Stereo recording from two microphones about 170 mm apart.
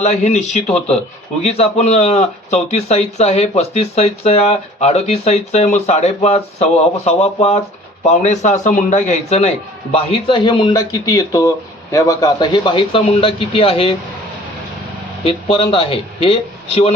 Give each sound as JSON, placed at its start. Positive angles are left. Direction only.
{"t": 0.0, "sound": "speech", "side_deg": 40}
{"t": 9.9, "sound": "speech", "side_deg": 30}
{"t": 15.2, "sound": "speech", "side_deg": 35}